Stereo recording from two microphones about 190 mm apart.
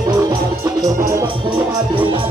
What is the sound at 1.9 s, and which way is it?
Music, 25° right (ahead or behind).